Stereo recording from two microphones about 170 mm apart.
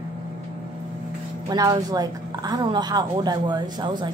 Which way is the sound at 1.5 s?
20° right (ahead or behind).